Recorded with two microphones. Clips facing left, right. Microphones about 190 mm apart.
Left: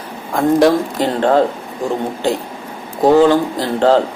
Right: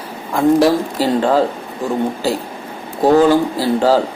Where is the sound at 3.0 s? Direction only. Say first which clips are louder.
Left 1 dB; 15° left (ahead or behind).